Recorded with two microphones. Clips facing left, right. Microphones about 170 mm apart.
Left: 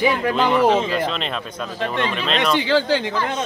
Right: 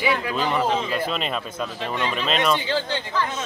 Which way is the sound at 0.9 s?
5° right (ahead or behind).